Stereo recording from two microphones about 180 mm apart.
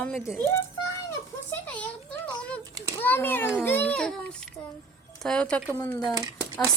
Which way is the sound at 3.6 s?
10° left (ahead or behind).